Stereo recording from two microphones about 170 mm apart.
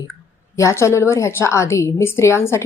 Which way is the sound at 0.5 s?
15° left (ahead or behind).